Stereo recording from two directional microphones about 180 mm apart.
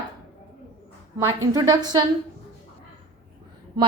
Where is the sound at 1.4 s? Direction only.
20° right (ahead or behind).